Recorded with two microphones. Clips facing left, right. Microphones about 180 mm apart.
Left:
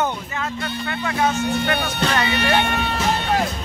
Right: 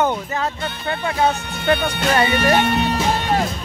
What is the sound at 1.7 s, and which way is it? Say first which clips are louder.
Speech: right 3 dB; 30° right (ahead or behind).